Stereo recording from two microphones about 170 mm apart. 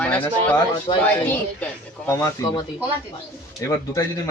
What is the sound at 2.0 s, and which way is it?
Speech, 20° left (ahead or behind).